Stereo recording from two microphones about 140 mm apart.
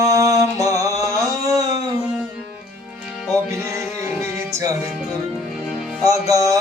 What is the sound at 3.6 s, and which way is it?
Music, 20° right (ahead or behind).